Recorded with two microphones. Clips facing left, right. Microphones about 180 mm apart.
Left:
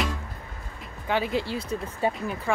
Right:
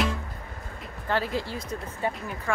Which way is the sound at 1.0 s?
15° left (ahead or behind).